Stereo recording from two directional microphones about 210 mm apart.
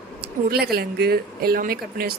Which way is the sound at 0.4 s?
50° right (ahead or behind).